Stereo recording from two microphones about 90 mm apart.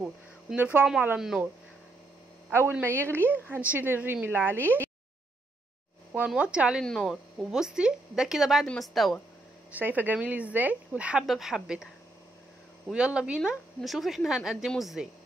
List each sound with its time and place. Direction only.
0.6 s a woman's voice: 20° right (ahead or behind)
1.1 s speech: 5° right (ahead or behind)
2.7 s a woman's voice: 25° right (ahead or behind)
6.2 s speech: 10° right (ahead or behind)
6.8 s speech: 5° left (ahead or behind)
7.3 s speech: 5° right (ahead or behind)
9.7 s a woman's voice: 20° right (ahead or behind); by 15.0 s 5° right (ahead or behind)